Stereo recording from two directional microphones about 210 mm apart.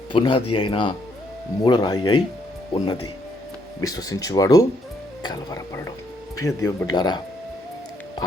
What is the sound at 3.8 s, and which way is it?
Speech, 15° left (ahead or behind).